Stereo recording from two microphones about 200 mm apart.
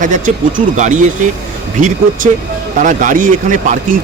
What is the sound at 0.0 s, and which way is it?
Speech, 40° right (ahead or behind).